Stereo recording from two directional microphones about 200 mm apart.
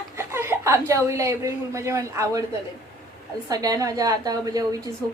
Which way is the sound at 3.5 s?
15° right (ahead or behind).